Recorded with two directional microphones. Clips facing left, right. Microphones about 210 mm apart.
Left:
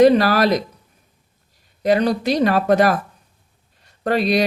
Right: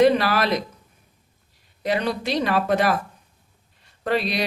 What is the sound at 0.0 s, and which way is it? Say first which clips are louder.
Speech: left 5 dB; 40° left (ahead or behind).